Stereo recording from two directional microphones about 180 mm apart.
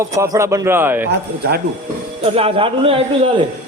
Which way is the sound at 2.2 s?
30° right (ahead or behind).